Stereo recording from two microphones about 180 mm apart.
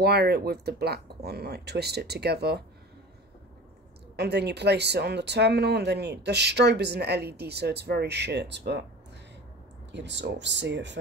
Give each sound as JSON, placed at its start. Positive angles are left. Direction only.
{"t": 0.0, "sound": "speech", "side_deg": -60}
{"t": 4.2, "sound": "speech", "side_deg": -65}
{"t": 9.9, "sound": "speech", "side_deg": -75}